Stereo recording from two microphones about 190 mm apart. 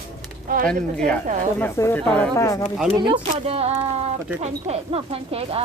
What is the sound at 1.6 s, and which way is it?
Speech, 15° left (ahead or behind).